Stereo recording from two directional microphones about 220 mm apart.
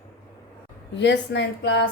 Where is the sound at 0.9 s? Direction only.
50° left (ahead or behind).